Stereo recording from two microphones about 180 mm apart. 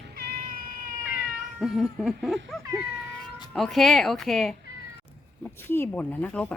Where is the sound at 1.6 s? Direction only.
Centre (ahead or behind).